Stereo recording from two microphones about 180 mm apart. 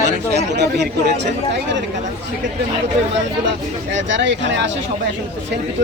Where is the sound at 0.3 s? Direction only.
70° right (ahead or behind).